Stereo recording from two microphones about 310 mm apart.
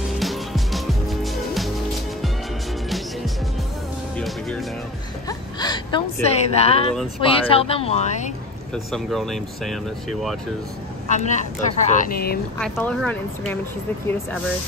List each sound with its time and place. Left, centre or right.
0.2 s music: centre
4.2 s music: centre
5.6 s a woman's voice: centre
8.7 s speech: centre
11.1 s speech: left
12.5 s speech: centre